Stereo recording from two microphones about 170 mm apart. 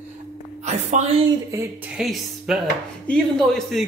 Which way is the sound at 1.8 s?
5° right (ahead or behind).